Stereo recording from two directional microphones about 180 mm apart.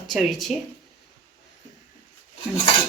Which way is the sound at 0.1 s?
Centre (ahead or behind).